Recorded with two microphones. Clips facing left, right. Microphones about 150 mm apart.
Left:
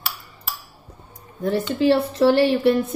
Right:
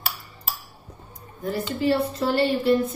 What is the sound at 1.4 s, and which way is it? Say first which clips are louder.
A woman's voice: left 5 dB; 70° left (ahead or behind).